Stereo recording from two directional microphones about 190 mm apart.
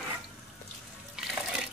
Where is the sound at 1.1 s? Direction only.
5° right (ahead or behind).